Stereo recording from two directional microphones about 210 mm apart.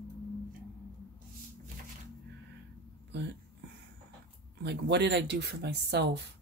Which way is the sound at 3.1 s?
55° right (ahead or behind).